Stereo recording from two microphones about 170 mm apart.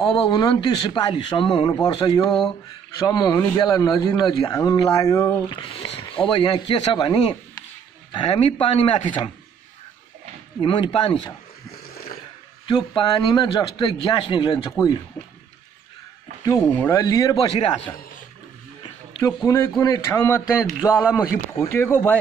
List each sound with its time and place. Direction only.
0.2 s a man's voice: 25° left (ahead or behind)
5.6 s a man's voice: 35° left (ahead or behind)
10.6 s a man's voice: 30° left (ahead or behind)
12.6 s a man's voice: 25° left (ahead or behind)
16.7 s a man's voice: 15° left (ahead or behind)
17.5 s speech: 35° left (ahead or behind)
19.2 s speech: 15° left (ahead or behind)
20.6 s a man's voice: 5° right (ahead or behind)
21.2 s speech: 15° left (ahead or behind)